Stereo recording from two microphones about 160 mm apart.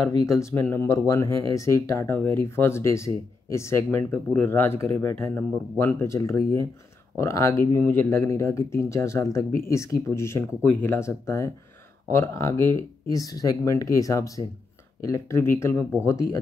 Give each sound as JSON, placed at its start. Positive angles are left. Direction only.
{"t": 0.3, "sound": "speech", "side_deg": 20}